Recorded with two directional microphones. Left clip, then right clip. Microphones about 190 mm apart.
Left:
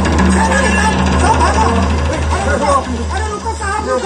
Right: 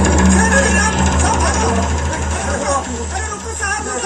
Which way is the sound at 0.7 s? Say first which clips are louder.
Left 2 dB; 30° right (ahead or behind).